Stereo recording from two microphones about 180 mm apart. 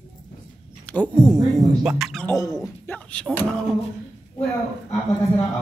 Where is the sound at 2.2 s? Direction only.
20° left (ahead or behind).